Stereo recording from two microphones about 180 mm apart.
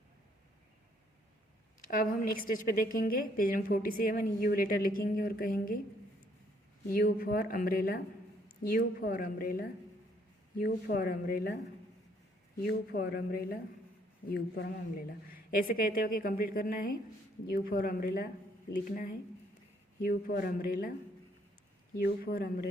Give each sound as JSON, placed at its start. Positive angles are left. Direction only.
{"t": 1.9, "sound": "a woman's voice", "side_deg": 50}
{"t": 6.9, "sound": "a woman's voice", "side_deg": 55}
{"t": 12.5, "sound": "speech", "side_deg": 60}
{"t": 15.3, "sound": "a woman's voice", "side_deg": 55}
{"t": 21.9, "sound": "speech", "side_deg": 55}